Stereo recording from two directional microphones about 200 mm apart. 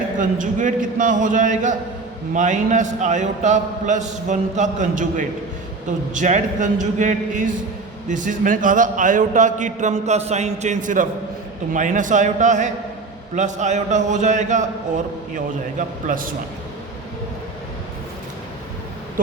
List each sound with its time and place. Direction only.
0.2 s a man's voice: 40° right (ahead or behind)
16.0 s a man's voice: 45° right (ahead or behind)